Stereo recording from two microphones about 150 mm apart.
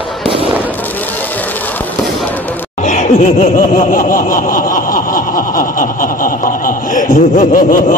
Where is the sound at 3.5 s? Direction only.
65° left (ahead or behind).